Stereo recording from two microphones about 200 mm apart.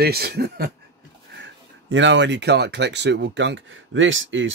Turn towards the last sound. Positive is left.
turn(degrees=-70)  # may be behind; listen again after turning